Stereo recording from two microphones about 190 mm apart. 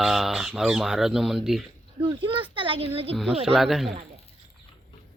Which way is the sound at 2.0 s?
25° right (ahead or behind).